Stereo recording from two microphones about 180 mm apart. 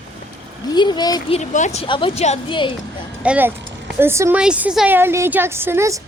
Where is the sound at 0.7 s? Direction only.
25° left (ahead or behind).